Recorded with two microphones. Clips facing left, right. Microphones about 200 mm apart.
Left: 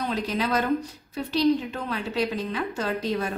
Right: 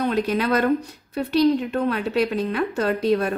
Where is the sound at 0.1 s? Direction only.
60° right (ahead or behind).